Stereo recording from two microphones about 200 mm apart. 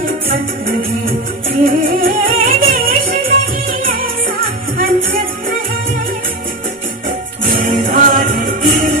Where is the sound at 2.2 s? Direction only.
45° right (ahead or behind).